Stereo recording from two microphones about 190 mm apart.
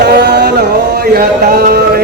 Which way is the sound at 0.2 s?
60° right (ahead or behind).